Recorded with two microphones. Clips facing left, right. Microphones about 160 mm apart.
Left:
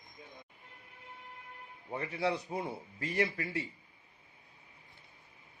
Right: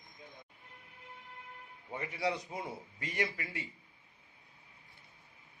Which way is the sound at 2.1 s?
30° left (ahead or behind).